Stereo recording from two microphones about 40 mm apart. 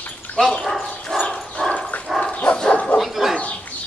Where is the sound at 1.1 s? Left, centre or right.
Left.